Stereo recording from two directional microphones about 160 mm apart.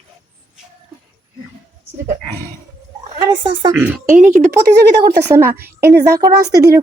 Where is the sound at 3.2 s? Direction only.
30° right (ahead or behind).